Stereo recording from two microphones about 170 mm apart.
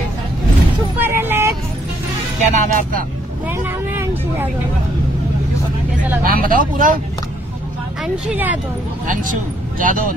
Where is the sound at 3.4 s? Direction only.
10° right (ahead or behind).